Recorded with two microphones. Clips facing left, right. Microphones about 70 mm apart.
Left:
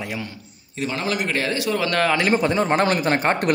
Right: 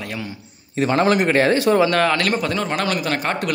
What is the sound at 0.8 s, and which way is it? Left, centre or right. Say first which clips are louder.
A man's voice: right 8 dB; right.